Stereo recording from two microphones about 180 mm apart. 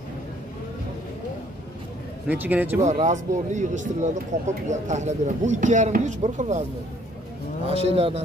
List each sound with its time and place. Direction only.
2.2 s speech: 10° right (ahead or behind)
2.8 s speech: 40° right (ahead or behind)
7.7 s speech: 35° right (ahead or behind)